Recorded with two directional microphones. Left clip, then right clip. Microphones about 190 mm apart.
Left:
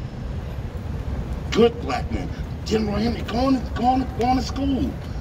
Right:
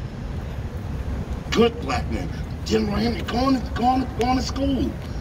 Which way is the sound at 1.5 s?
15° right (ahead or behind).